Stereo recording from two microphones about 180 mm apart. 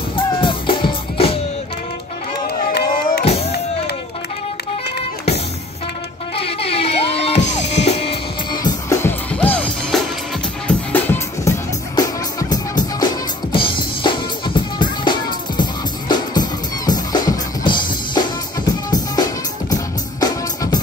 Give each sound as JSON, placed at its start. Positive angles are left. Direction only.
{"t": 0.1, "sound": "music", "side_deg": 30}
{"t": 2.4, "sound": "a sound", "side_deg": 65}
{"t": 3.3, "sound": "music", "side_deg": 35}
{"t": 6.3, "sound": "music", "side_deg": 35}
{"t": 8.6, "sound": "music", "side_deg": 15}
{"t": 11.9, "sound": "music", "side_deg": 20}